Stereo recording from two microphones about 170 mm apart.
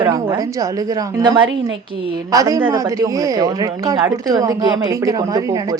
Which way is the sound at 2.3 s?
20° right (ahead or behind).